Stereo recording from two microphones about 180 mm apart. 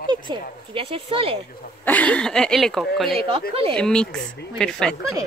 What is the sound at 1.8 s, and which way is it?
Speech, 10° left (ahead or behind).